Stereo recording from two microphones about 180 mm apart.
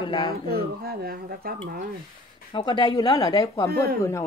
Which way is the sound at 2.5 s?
25° left (ahead or behind).